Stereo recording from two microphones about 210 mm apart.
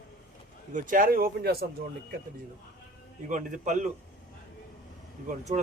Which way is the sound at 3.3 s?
35° right (ahead or behind).